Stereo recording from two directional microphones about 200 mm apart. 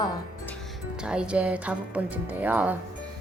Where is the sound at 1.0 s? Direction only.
5° right (ahead or behind).